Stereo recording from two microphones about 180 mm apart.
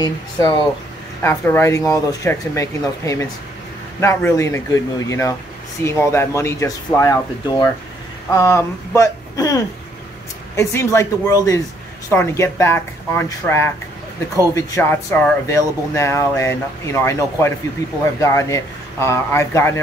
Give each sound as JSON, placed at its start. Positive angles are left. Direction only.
{"t": 0.0, "sound": "speech", "side_deg": 25}